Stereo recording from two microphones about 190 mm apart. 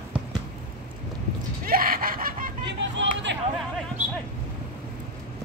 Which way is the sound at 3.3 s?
65° right (ahead or behind).